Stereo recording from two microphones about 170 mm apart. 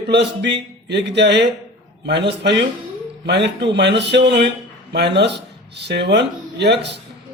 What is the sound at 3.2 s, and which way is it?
A man's voice, 90° right.